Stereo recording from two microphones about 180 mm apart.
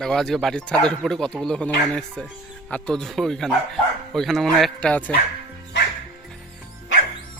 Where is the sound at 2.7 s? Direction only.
5° left (ahead or behind).